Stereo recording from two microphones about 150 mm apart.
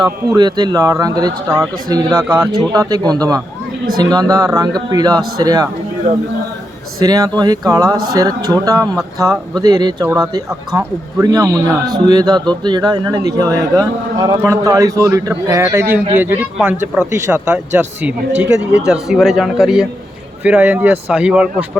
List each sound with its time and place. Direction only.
0.0 s a man's voice: 30° right (ahead or behind)
7.0 s a man's voice: 25° right (ahead or behind); by 21.7 s 5° right (ahead or behind)